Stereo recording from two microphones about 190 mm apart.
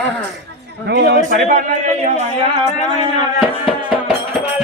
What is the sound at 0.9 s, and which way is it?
A man's voice, 60° right (ahead or behind).